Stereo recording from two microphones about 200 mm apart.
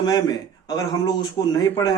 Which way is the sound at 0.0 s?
20° left (ahead or behind).